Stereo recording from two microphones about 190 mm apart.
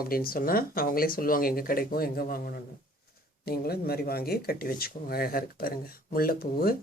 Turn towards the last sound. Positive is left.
turn(degrees=50)  # may be behind; listen again after turning